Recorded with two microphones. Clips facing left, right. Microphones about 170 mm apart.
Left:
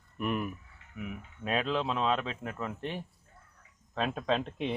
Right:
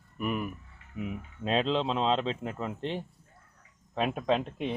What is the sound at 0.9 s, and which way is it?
Speech, 25° right (ahead or behind).